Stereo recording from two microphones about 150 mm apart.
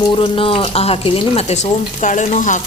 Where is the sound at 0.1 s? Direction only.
35° left (ahead or behind).